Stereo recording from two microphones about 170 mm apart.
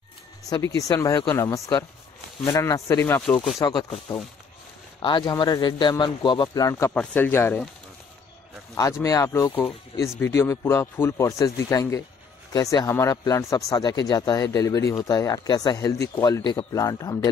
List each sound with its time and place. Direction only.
0.5 s speech: 20° left (ahead or behind)
3.5 s speech: 25° left (ahead or behind)
5.0 s speech: 25° left (ahead or behind)
9.0 s speech: 20° left (ahead or behind)